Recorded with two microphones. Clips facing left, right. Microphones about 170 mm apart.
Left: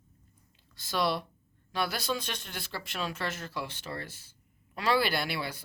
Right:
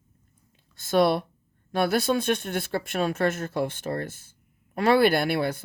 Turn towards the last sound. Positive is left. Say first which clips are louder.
# right 9 dB
turn(degrees=-50)  # may be behind; listen again after turning